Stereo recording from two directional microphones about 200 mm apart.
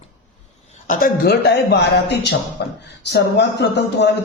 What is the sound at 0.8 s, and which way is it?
A man's voice, 45° left (ahead or behind).